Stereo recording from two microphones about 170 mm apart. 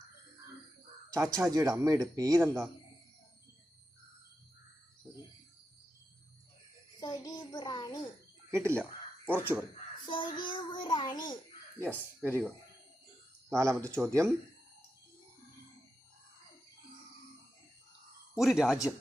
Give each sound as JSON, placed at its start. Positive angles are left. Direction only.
{"t": 1.1, "sound": "speech", "side_deg": -20}
{"t": 5.1, "sound": "music", "side_deg": -5}
{"t": 7.0, "sound": "a sound", "side_deg": 25}
{"t": 8.4, "sound": "speech", "side_deg": -15}
{"t": 10.1, "sound": "child singing", "side_deg": 25}
{"t": 11.8, "sound": "speech", "side_deg": -15}
{"t": 13.5, "sound": "speech", "side_deg": -15}
{"t": 18.3, "sound": "speech", "side_deg": 0}